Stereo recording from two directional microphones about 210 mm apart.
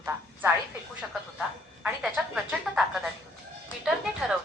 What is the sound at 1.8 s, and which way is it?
A woman's voice, 5° right (ahead or behind).